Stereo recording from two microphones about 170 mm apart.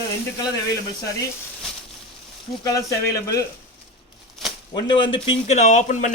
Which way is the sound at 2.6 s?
20° left (ahead or behind).